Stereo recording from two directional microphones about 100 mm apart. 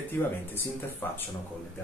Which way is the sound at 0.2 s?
15° left (ahead or behind).